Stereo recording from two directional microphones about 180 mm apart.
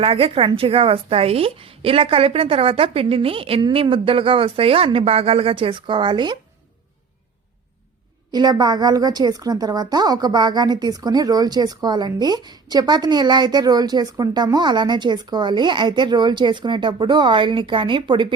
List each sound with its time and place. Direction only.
0.0 s a woman's voice: 30° right (ahead or behind)
8.3 s a woman's voice: 25° right (ahead or behind)